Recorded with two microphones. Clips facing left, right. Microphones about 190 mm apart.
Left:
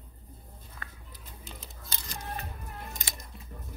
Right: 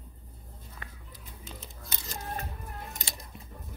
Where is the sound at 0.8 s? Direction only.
20° right (ahead or behind).